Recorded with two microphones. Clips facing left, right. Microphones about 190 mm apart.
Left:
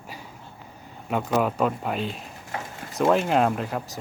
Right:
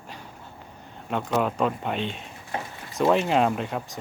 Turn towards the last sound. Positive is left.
turn(degrees=0)  # may be behind; listen again after turning